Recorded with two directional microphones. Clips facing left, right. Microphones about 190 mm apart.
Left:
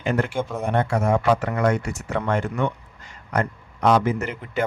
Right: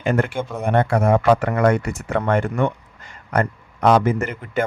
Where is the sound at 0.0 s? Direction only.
50° right (ahead or behind).